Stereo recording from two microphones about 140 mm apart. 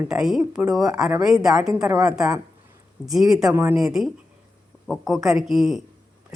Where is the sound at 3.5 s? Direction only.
15° right (ahead or behind).